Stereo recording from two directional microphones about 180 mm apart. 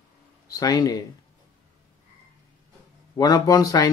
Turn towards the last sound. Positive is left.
turn(degrees=20)  # may be behind; listen again after turning